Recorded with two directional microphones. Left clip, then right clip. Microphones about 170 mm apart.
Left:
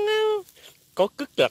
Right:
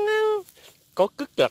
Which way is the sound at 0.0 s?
10° right (ahead or behind).